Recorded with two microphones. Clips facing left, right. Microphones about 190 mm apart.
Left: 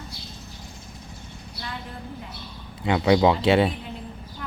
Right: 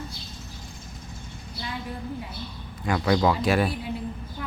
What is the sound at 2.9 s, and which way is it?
Speech, 20° left (ahead or behind).